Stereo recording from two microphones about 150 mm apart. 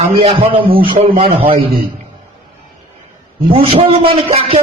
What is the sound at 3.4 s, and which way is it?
A man's voice, 35° right (ahead or behind).